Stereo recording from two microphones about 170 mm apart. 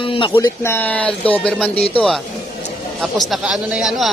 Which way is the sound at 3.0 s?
Centre (ahead or behind).